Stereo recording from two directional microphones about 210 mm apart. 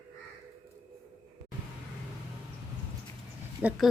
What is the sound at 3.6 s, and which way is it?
Speech, 10° right (ahead or behind).